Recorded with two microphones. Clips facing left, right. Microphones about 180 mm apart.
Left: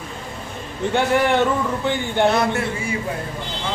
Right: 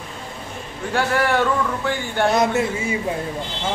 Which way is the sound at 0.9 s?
20° left (ahead or behind).